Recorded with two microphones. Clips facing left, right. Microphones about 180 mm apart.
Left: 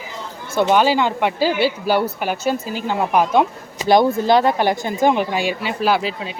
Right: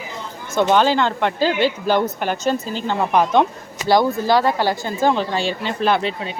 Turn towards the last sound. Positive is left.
turn(degrees=5)  # may be behind; listen again after turning